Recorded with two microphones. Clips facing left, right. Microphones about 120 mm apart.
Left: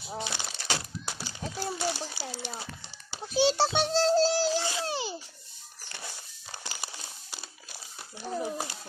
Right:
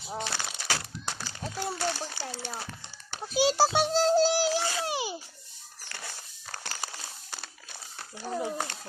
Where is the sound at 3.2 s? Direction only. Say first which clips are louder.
Right 1 dB; 10° right (ahead or behind).